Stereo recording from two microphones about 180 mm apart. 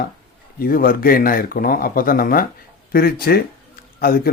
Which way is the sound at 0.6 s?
55° left (ahead or behind).